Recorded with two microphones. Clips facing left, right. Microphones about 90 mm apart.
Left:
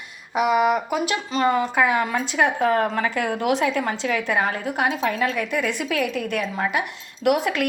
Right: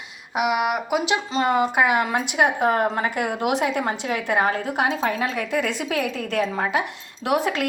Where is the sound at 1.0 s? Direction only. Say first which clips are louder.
Left 1 dB; 20° right (ahead or behind).